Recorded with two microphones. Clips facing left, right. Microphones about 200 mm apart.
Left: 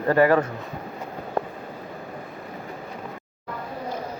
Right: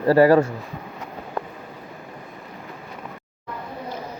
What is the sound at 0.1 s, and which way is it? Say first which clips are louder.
Speech: right 4 dB; 35° right (ahead or behind).